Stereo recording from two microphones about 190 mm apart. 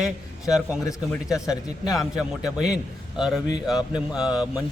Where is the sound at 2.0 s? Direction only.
Centre (ahead or behind).